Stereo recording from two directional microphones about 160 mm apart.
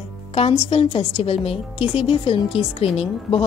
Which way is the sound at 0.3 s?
35° left (ahead or behind).